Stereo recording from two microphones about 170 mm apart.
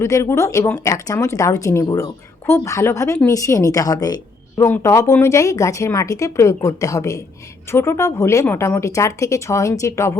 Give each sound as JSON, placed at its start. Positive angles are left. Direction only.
{"t": 0.0, "sound": "a woman's voice", "side_deg": 15}